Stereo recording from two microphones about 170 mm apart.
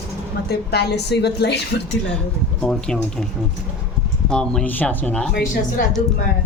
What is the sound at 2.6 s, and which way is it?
Speech, 5° left (ahead or behind).